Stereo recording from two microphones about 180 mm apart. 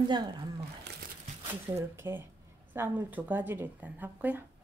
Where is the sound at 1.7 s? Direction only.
15° right (ahead or behind).